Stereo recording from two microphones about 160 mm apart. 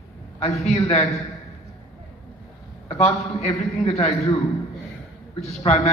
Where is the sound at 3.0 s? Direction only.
45° left (ahead or behind).